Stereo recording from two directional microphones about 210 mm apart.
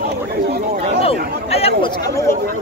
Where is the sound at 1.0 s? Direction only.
30° left (ahead or behind).